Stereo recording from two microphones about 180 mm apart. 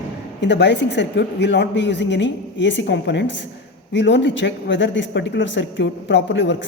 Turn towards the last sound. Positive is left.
turn(degrees=90)